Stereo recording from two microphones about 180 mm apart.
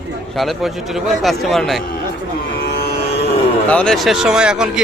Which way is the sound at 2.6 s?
60° left (ahead or behind).